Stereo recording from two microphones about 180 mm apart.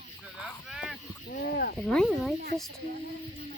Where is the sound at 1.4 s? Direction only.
60° left (ahead or behind).